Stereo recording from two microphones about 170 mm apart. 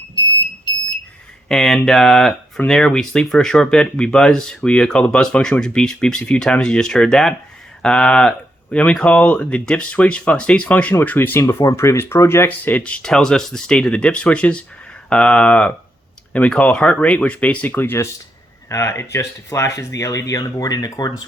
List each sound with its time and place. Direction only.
1.5 s speech: 5° left (ahead or behind); by 21.2 s 20° left (ahead or behind)